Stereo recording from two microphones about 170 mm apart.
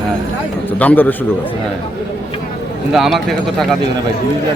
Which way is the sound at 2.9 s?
Centre (ahead or behind).